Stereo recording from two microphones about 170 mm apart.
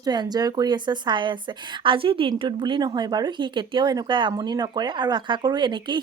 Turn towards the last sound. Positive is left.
turn(degrees=-25)  # may be behind; listen again after turning